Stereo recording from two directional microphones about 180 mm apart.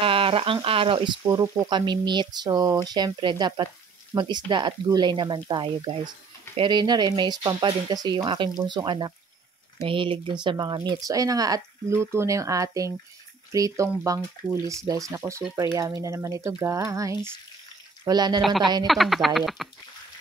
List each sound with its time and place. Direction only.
0.0 s speech: 30° right (ahead or behind)
18.4 s speech: centre (ahead or behind)